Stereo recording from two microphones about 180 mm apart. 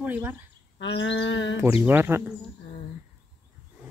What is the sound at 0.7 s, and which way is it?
Speech, 70° left (ahead or behind).